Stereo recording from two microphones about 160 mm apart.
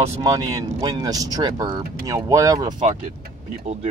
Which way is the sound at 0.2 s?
20° right (ahead or behind).